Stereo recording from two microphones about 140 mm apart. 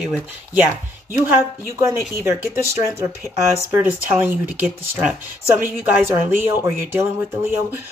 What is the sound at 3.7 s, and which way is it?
Speech, 15° right (ahead or behind).